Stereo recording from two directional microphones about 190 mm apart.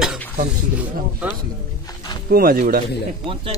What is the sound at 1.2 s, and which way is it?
Speech, 5° right (ahead or behind).